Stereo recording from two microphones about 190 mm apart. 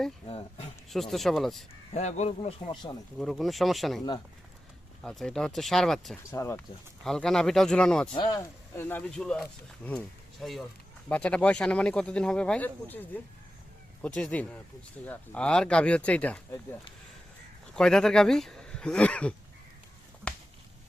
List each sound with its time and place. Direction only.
0.3 s speech: 30° left (ahead or behind)
0.9 s speech: centre (ahead or behind)
1.9 s speech: 35° left (ahead or behind)
3.2 s speech: centre (ahead or behind)
5.0 s speech: 5° left (ahead or behind)
6.3 s speech: 15° left (ahead or behind)
7.0 s speech: centre (ahead or behind)
8.1 s speech: 20° left (ahead or behind)
17.7 s speech: 5° left (ahead or behind)
20.2 s a sound: 5° left (ahead or behind)